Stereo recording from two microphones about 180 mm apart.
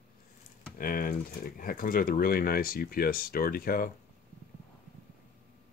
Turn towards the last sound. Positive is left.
turn(degrees=55)  # may be behind; listen again after turning